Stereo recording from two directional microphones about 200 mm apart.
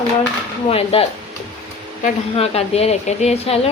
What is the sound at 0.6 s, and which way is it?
Speech, 30° left (ahead or behind).